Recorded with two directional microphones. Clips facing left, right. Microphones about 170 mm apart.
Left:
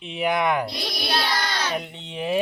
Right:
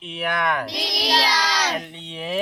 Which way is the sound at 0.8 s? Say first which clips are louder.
Right 3 dB; 90° right.